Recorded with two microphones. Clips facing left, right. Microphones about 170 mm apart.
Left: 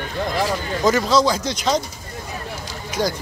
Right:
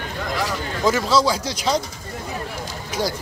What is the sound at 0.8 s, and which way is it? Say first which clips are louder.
Speech: left 1 dB; 5° right (ahead or behind).